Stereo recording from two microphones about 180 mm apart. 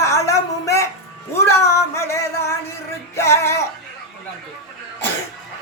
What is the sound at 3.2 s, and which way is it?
Music, 15° left (ahead or behind).